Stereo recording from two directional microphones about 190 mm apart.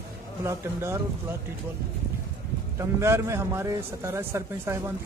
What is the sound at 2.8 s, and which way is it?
A man's voice, 15° right (ahead or behind).